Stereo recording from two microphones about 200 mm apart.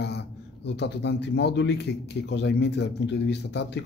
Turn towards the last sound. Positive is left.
turn(degrees=60)  # may be behind; listen again after turning